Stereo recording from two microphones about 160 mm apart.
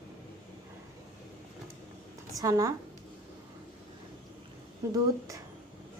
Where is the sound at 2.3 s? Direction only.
20° right (ahead or behind).